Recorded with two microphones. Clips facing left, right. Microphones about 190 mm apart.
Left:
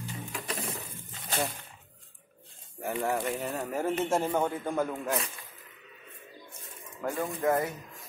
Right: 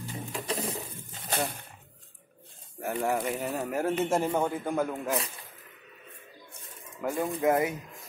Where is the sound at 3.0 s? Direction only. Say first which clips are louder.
Right 2 dB; 5° right (ahead or behind).